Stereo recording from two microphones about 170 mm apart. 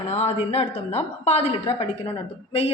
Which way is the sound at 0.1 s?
40° left (ahead or behind).